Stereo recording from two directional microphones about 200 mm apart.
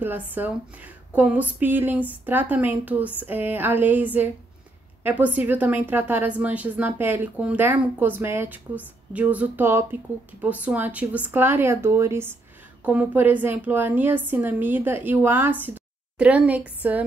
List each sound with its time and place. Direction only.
0.0 s a woman's voice: 10° right (ahead or behind)